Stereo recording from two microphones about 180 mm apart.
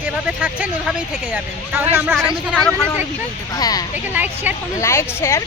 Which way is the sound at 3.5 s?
20° left (ahead or behind).